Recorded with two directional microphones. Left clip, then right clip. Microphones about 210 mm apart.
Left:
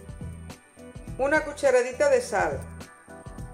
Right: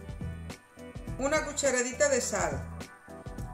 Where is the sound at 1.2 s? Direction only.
5° left (ahead or behind).